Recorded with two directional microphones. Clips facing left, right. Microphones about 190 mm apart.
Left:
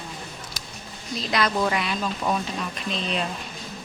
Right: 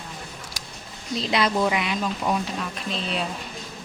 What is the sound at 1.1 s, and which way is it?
Speech, 25° right (ahead or behind).